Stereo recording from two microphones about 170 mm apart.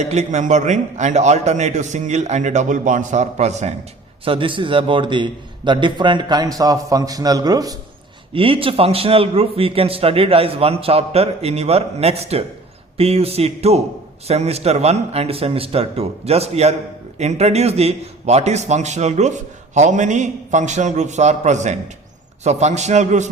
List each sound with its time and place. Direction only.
0.0 s a man's voice: 40° right (ahead or behind)
4.3 s a man's voice: 30° right (ahead or behind)
8.3 s a man's voice: 30° right (ahead or behind)